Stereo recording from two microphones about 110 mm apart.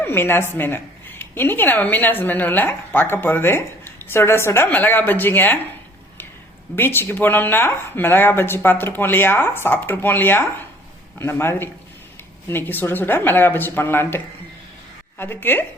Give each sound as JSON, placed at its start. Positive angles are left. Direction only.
{"t": 0.0, "sound": "a woman's voice", "side_deg": 20}
{"t": 6.7, "sound": "a woman's voice", "side_deg": 20}
{"t": 15.2, "sound": "a woman's voice", "side_deg": 20}